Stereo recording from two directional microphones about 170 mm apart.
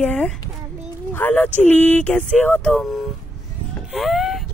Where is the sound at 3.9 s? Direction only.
Centre (ahead or behind).